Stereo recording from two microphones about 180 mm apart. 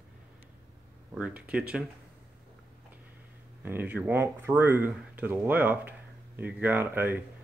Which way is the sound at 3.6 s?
10° right (ahead or behind).